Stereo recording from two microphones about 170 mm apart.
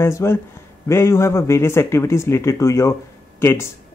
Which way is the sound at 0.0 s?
15° left (ahead or behind).